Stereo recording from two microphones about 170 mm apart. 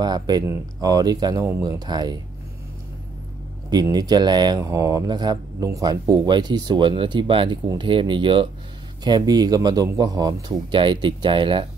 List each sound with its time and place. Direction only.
0.0 s speech: 25° right (ahead or behind)
3.7 s speech: 25° right (ahead or behind)